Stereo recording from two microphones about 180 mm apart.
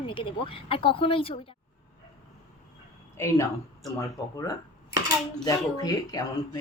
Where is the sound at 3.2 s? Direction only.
15° left (ahead or behind).